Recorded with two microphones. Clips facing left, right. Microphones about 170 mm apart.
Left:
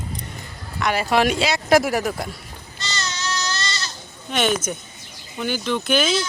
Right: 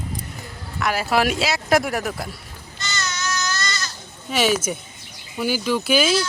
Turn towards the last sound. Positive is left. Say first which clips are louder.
# right 1 dB
turn(degrees=-5)  # may be behind; listen again after turning